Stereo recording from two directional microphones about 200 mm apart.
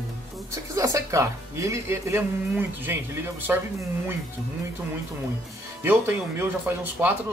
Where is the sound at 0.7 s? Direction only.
15° right (ahead or behind).